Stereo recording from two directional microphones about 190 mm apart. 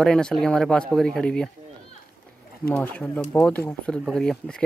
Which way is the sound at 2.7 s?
10° left (ahead or behind).